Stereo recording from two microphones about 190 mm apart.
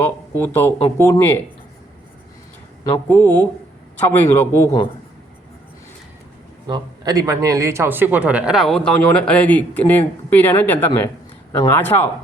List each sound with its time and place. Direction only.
0.0 s a man's voice: 10° left (ahead or behind)
3.1 s a man's voice: 10° left (ahead or behind)
6.7 s a man's voice: 20° right (ahead or behind); by 12.0 s 10° left (ahead or behind)